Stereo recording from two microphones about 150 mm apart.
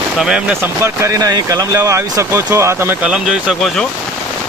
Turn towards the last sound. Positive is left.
turn(degrees=0)  # may be behind; listen again after turning